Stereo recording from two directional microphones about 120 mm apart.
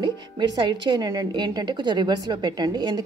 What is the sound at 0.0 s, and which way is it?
A woman's voice, 40° right (ahead or behind).